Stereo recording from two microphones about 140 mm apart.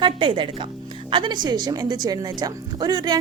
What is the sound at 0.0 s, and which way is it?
A woman's voice, 35° right (ahead or behind).